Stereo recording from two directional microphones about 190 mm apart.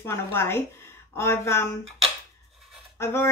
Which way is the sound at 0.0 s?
10° left (ahead or behind).